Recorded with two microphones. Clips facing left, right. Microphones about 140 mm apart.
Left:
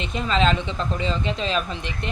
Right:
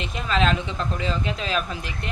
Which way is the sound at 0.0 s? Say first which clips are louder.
Left 2 dB; 5° right (ahead or behind).